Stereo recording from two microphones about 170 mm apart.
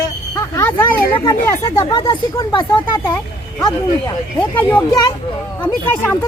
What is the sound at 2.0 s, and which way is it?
Speech, 25° left (ahead or behind).